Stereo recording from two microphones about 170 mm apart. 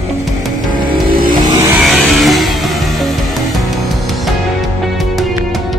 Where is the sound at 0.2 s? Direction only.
Centre (ahead or behind).